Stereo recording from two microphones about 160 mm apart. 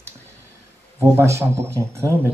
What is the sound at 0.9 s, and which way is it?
Speech, 15° right (ahead or behind).